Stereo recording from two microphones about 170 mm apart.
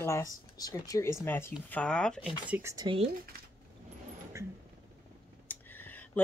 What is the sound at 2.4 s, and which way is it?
Speech, 10° right (ahead or behind).